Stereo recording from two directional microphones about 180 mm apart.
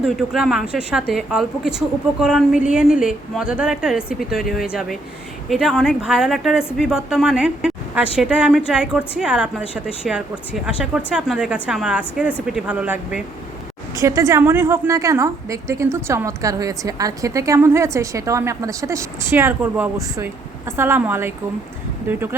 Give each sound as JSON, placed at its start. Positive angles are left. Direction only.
{"t": 0.0, "sound": "a woman's voice", "side_deg": 0}
{"t": 13.9, "sound": "a woman's voice", "side_deg": -20}